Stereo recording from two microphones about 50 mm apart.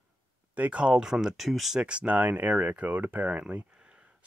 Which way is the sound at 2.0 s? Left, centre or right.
Right.